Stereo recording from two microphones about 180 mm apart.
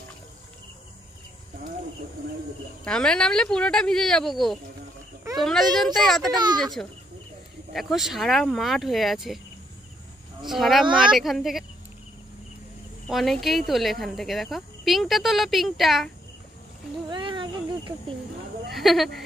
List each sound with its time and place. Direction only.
2.8 s speech: 5° left (ahead or behind)
6.3 s a child's voice: 25° right (ahead or behind)
6.6 s speech: centre (ahead or behind)
10.4 s speech: centre (ahead or behind)
13.0 s speech: centre (ahead or behind)
17.1 s cricket: 25° right (ahead or behind)
18.7 s a sound: centre (ahead or behind)